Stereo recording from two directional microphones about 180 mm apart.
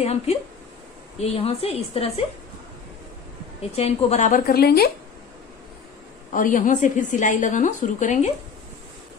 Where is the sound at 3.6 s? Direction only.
35° left (ahead or behind).